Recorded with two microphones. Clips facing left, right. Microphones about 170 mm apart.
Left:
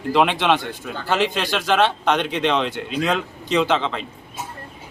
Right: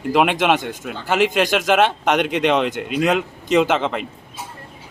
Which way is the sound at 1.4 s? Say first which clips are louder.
Right 3 dB; 15° right (ahead or behind).